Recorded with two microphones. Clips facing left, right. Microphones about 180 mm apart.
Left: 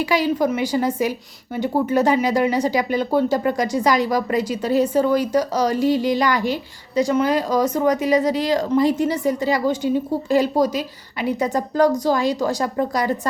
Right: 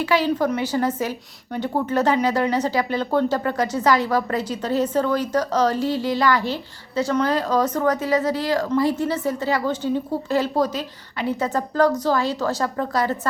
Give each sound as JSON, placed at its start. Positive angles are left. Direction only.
{"t": 0.0, "sound": "speech", "side_deg": 15}